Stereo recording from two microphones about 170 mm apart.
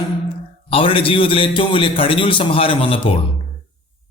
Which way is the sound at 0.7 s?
30° left (ahead or behind).